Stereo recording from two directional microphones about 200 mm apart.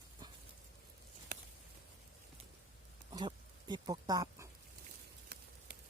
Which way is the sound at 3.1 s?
20° right (ahead or behind).